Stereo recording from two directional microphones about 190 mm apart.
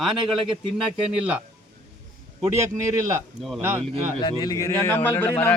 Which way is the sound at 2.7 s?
15° right (ahead or behind).